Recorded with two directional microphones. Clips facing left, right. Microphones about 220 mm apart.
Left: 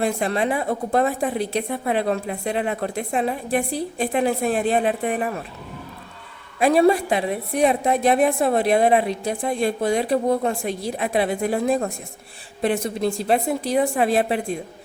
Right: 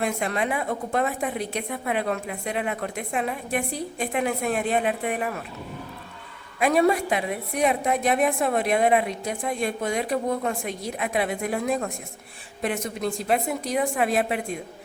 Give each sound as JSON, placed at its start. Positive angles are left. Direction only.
{"t": 0.0, "sound": "a woman's voice", "side_deg": 30}
{"t": 6.6, "sound": "a woman's voice", "side_deg": 30}